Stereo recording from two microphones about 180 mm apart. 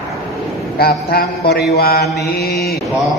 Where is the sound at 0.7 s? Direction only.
60° left (ahead or behind).